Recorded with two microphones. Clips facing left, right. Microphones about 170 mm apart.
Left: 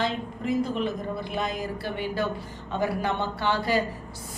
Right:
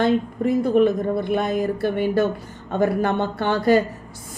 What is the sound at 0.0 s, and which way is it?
A woman's voice, 50° right (ahead or behind).